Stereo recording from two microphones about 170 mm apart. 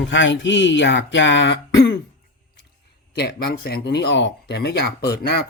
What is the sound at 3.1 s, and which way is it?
Speech, 70° left (ahead or behind).